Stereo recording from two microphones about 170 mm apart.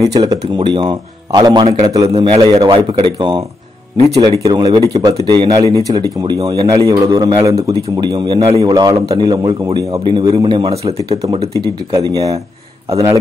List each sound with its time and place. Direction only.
0.2 s a man's voice: 25° right (ahead or behind)
2.1 s speech: 35° right (ahead or behind)
4.0 s speech: 40° right (ahead or behind)
4.5 s a man's voice: 25° right (ahead or behind)
11.9 s a man's voice: 20° right (ahead or behind)